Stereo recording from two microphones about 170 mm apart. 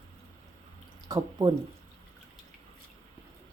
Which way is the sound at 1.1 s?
25° right (ahead or behind).